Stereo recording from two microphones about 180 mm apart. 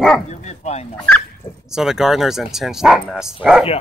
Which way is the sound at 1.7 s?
Centre (ahead or behind).